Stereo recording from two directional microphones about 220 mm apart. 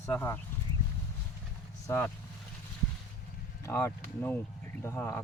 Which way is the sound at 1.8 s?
10° left (ahead or behind).